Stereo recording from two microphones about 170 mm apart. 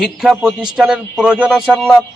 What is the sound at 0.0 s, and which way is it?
Speech, centre (ahead or behind).